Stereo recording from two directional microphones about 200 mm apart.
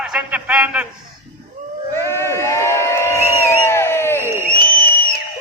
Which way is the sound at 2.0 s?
15° left (ahead or behind).